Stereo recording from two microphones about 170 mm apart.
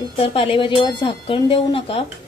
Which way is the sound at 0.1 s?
30° left (ahead or behind).